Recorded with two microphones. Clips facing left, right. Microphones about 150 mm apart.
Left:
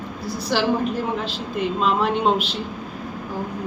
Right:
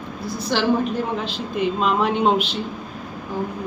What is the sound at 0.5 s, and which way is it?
Speech, 5° left (ahead or behind).